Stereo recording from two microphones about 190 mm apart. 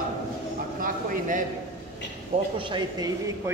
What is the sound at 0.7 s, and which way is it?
Speech, 45° right (ahead or behind).